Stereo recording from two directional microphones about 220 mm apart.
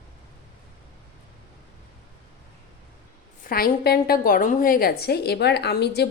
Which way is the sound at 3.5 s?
45° left (ahead or behind).